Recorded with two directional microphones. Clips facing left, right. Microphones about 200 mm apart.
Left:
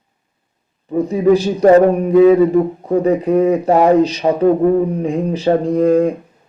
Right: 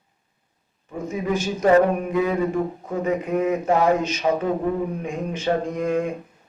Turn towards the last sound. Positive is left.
turn(degrees=35)  # may be behind; listen again after turning